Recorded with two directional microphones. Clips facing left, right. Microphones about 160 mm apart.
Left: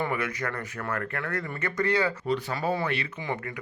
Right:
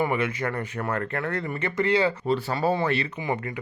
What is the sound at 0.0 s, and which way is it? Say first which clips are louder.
A man's voice: right 4 dB; 25° right (ahead or behind).